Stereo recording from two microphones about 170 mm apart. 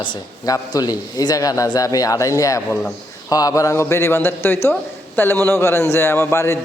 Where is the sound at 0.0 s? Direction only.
25° left (ahead or behind).